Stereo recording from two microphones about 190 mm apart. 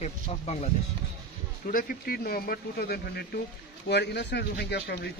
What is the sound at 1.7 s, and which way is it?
A man's voice, 50° left (ahead or behind).